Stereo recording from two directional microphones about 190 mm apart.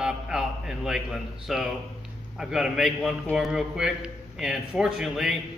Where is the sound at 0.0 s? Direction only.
5° right (ahead or behind).